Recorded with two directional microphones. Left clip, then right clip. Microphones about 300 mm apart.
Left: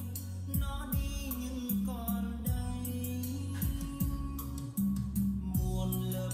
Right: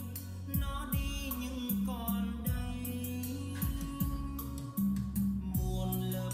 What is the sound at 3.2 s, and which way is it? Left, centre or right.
Music, centre.